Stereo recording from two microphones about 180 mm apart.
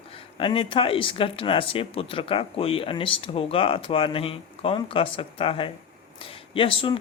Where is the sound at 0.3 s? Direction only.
30° left (ahead or behind).